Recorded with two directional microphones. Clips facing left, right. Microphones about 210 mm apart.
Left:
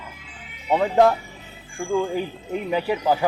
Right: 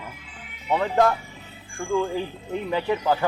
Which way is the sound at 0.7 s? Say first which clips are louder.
Left 3 dB; 15° left (ahead or behind).